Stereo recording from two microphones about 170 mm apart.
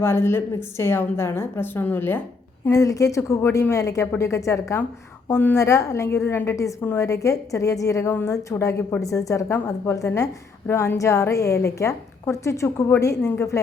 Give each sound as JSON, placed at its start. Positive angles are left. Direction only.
{"t": 0.0, "sound": "a woman's voice", "side_deg": 15}